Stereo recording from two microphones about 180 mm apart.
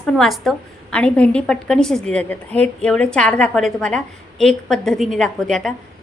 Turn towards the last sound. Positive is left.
turn(degrees=5)  # may be behind; listen again after turning